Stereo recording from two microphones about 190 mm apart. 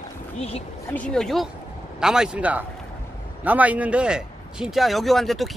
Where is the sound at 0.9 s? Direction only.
5° left (ahead or behind).